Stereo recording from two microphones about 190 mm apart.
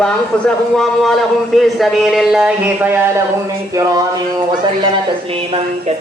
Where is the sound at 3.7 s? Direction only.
20° right (ahead or behind).